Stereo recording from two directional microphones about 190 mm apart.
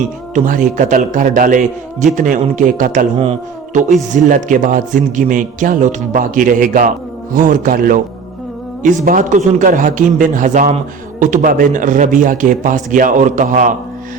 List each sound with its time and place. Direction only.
0.3 s a man's voice: 45° right (ahead or behind)